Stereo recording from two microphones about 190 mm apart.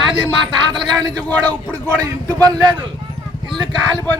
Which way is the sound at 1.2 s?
5° left (ahead or behind).